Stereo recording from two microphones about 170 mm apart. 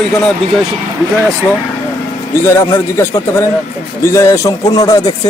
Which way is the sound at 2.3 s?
15° left (ahead or behind).